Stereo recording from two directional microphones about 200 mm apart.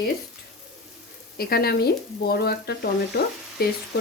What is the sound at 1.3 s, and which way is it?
Speech, 50° left (ahead or behind).